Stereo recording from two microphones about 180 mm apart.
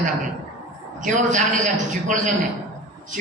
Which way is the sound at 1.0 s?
45° right (ahead or behind).